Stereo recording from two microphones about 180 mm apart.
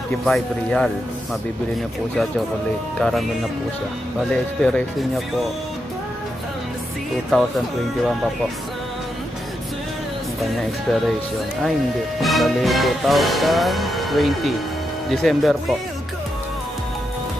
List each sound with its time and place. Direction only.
0.2 s music: 5° left (ahead or behind)
3.0 s music: centre (ahead or behind)
4.3 s music: 5° left (ahead or behind)
7.2 s music: centre (ahead or behind)
10.4 s music: centre (ahead or behind)
12.2 s music: centre (ahead or behind)